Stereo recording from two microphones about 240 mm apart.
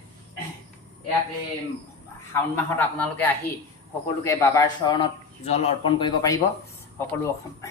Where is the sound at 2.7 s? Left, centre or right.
Centre.